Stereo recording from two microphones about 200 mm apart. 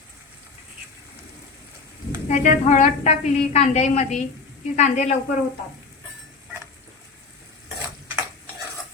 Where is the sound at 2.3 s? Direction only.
35° left (ahead or behind).